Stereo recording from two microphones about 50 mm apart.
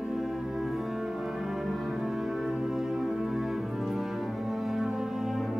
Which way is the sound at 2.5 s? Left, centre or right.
Centre.